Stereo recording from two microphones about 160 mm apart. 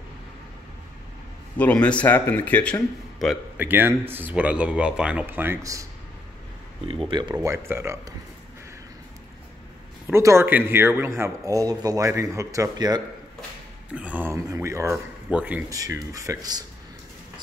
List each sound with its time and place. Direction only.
1.6 s speech: 10° left (ahead or behind)
3.5 s speech: 10° right (ahead or behind)
6.9 s speech: 35° right (ahead or behind)
7.4 s speech: 15° right (ahead or behind)
10.0 s speech: 15° right (ahead or behind)
13.9 s speech: 10° right (ahead or behind)
15.7 s speech: 20° right (ahead or behind)